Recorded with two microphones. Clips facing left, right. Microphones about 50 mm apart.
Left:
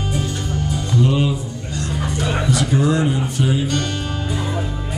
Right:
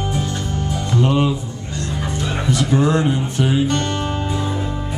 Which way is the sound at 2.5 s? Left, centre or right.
Right.